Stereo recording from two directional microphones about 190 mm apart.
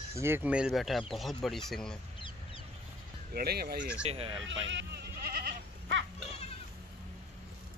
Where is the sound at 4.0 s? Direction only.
30° right (ahead or behind).